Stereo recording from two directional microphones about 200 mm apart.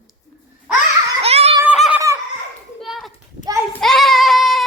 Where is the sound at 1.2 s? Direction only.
30° right (ahead or behind).